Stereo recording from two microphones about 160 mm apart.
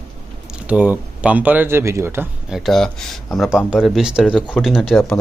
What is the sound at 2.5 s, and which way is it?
Speech, centre (ahead or behind).